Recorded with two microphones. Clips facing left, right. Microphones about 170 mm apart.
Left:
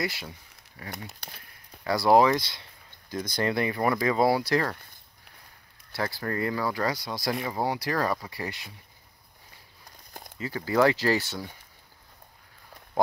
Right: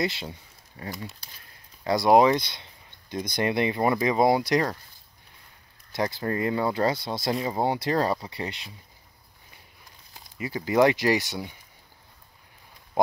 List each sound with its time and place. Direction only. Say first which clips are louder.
0.0 s speech: right 4 dB; 25° right (ahead or behind)
5.9 s speech: right 3 dB; 20° right (ahead or behind)
10.1 s a sound: left 8 dB; 50° left (ahead or behind)
10.4 s speech: right 2 dB; 15° right (ahead or behind)